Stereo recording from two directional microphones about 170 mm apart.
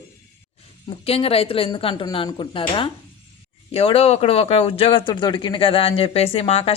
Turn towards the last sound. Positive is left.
turn(degrees=35)  # may be behind; listen again after turning